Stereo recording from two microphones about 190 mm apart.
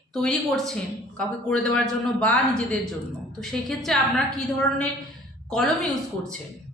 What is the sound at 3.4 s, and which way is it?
Speech, centre (ahead or behind).